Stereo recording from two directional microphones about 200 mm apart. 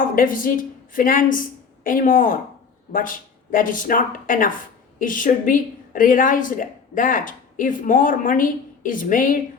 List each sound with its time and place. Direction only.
0.2 s a woman's voice: 45° left (ahead or behind)